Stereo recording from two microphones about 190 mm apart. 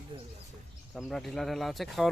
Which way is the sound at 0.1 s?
25° right (ahead or behind).